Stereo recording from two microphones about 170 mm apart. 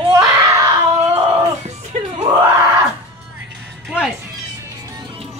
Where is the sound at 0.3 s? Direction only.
20° right (ahead or behind).